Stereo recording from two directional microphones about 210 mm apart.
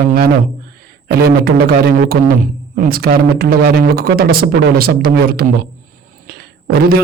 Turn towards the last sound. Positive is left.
turn(degrees=-45)  # may be behind; listen again after turning